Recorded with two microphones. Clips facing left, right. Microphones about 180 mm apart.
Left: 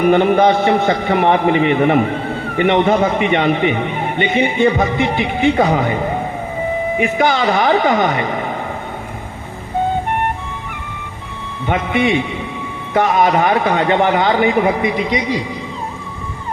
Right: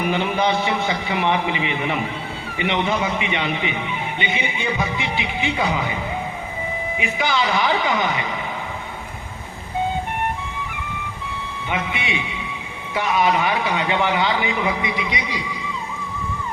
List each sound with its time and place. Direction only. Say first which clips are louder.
0.0 s speech: left 9 dB; 50° left (ahead or behind)
11.7 s speech: left 10 dB; 50° left (ahead or behind)